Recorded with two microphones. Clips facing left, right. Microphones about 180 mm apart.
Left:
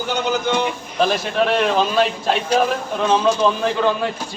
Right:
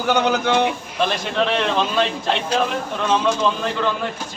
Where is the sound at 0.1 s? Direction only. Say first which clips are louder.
Right 3 dB; 65° right (ahead or behind).